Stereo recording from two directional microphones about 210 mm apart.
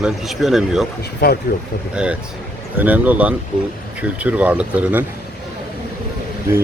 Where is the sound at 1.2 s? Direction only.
45° left (ahead or behind).